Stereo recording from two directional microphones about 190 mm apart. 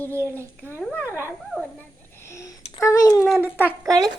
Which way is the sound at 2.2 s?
15° left (ahead or behind).